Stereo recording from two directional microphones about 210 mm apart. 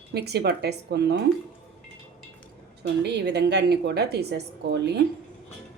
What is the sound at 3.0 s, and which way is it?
Speech, 50° right (ahead or behind).